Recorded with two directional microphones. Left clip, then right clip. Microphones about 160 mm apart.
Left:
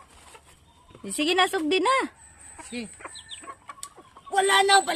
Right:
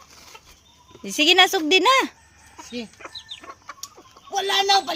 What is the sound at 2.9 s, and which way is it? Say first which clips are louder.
Chicken: right 3 dB; 50° right (ahead or behind).